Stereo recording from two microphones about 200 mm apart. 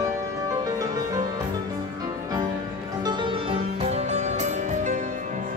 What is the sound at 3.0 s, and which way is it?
Music, 25° right (ahead or behind).